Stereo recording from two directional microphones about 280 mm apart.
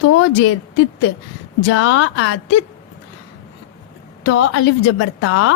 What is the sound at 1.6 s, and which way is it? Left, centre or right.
Speech, left.